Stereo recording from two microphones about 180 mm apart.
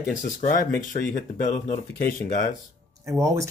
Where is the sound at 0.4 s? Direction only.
40° left (ahead or behind).